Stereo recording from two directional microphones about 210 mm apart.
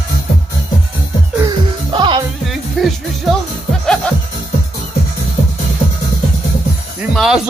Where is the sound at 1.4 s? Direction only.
20° right (ahead or behind).